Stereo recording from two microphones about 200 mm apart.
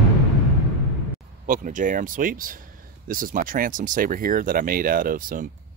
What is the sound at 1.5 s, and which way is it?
Speech, 40° right (ahead or behind).